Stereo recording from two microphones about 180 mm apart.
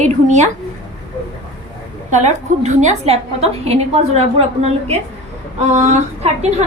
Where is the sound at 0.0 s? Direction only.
40° right (ahead or behind).